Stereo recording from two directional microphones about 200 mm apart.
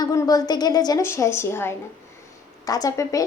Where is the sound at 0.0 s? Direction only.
15° left (ahead or behind).